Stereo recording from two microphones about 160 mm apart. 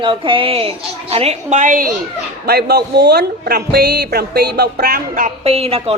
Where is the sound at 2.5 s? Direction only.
90° right; by 5.3 s 65° right (ahead or behind).